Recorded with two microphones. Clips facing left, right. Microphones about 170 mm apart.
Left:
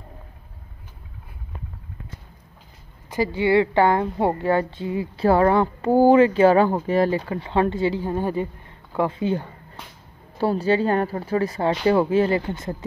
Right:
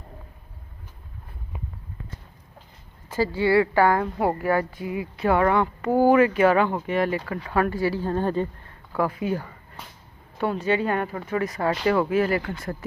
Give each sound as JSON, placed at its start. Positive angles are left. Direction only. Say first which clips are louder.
{"t": 3.1, "sound": "a woman's voice", "louder": "left 1 dB", "side_deg": 20}
{"t": 8.9, "sound": "a woman's voice", "louder": "left 2 dB", "side_deg": 25}